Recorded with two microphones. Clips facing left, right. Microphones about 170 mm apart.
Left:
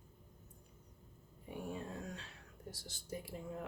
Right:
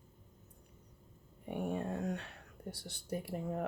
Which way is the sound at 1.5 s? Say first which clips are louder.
Right 7 dB; 60° right (ahead or behind).